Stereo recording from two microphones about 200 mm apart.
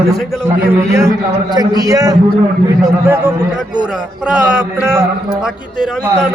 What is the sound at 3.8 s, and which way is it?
A man's voice, 5° right (ahead or behind).